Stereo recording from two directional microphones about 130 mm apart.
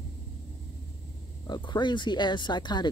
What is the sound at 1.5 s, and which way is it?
Speech, 35° left (ahead or behind).